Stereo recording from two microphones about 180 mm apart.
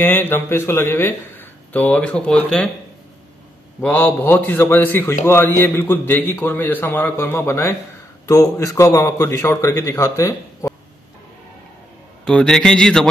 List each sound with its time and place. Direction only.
0.0 s a man's voice: 10° left (ahead or behind)
3.8 s a man's voice: 10° left (ahead or behind)
12.3 s a man's voice: 5° left (ahead or behind)